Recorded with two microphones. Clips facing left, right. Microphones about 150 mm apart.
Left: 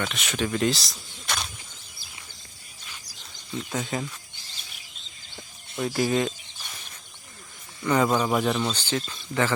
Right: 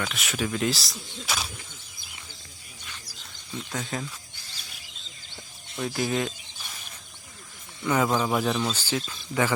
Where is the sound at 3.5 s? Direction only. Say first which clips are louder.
Left 3 dB; 5° left (ahead or behind).